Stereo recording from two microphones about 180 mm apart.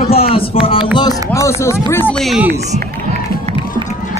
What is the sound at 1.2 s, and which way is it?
Speech, 15° left (ahead or behind).